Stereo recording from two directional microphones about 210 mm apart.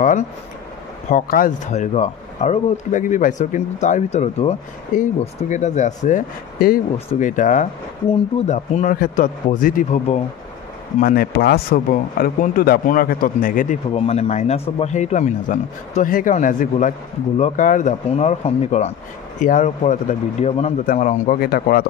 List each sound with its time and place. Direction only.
1.1 s speech: 40° left (ahead or behind)
13.9 s speech: 30° left (ahead or behind); by 21.8 s 45° left (ahead or behind)